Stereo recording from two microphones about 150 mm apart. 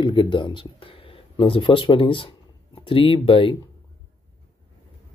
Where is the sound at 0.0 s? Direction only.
30° left (ahead or behind).